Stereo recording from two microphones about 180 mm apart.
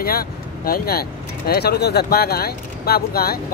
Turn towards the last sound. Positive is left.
turn(degrees=60)  # may be behind; listen again after turning